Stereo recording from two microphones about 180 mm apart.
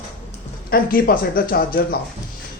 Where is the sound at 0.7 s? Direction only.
55° left (ahead or behind).